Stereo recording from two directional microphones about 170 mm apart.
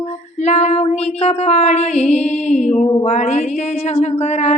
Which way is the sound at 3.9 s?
40° left (ahead or behind).